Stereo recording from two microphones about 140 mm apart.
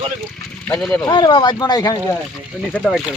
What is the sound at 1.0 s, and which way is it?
Speech, 30° left (ahead or behind).